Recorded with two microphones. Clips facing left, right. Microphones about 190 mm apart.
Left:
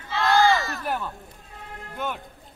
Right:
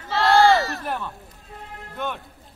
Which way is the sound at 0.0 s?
55° right (ahead or behind).